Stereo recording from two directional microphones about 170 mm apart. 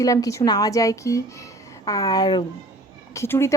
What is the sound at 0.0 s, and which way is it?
A woman's voice, 20° left (ahead or behind).